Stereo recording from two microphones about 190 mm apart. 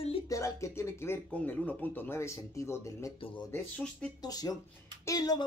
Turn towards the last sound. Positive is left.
turn(degrees=20)  # may be behind; listen again after turning